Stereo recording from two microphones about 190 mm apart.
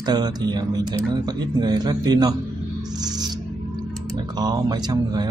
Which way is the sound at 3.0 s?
20° right (ahead or behind).